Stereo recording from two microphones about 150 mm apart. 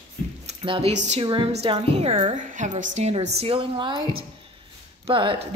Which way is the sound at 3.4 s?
35° right (ahead or behind).